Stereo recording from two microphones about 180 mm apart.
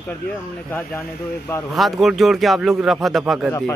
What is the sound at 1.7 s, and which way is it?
Speech, centre (ahead or behind).